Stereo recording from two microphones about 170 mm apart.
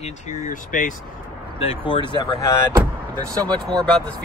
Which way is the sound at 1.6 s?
30° left (ahead or behind).